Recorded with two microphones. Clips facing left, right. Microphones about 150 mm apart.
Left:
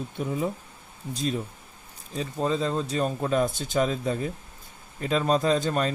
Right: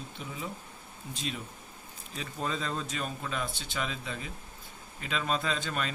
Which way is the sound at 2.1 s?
30° left (ahead or behind).